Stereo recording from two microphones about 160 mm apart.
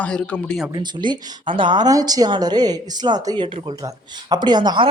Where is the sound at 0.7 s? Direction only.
25° right (ahead or behind).